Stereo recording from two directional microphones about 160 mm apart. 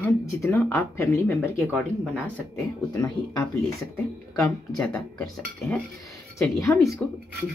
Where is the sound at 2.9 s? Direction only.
20° left (ahead or behind).